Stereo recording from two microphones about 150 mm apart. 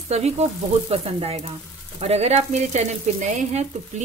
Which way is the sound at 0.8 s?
40° right (ahead or behind).